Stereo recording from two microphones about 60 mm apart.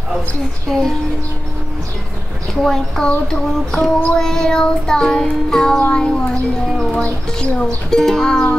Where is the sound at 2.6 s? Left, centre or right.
Centre.